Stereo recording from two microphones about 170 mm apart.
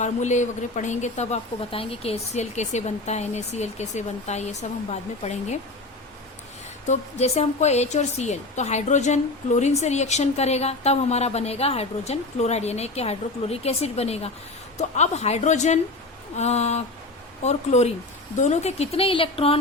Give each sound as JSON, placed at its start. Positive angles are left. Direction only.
{"t": 0.0, "sound": "a woman's voice", "side_deg": 45}
{"t": 6.8, "sound": "a woman's voice", "side_deg": 40}